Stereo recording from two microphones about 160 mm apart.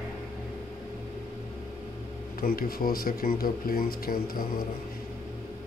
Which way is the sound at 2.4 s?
65° left (ahead or behind).